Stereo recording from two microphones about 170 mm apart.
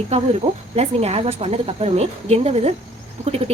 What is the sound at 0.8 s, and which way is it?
A woman's voice, 35° right (ahead or behind).